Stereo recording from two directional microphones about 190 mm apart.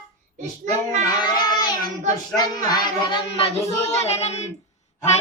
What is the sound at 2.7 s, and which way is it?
Child singing, 25° left (ahead or behind).